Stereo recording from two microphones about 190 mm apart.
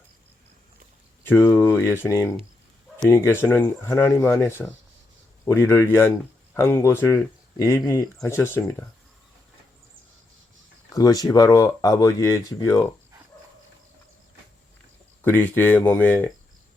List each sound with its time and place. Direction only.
1.2 s speech: 10° left (ahead or behind)
10.8 s speech: 20° left (ahead or behind)
15.2 s speech: 10° left (ahead or behind)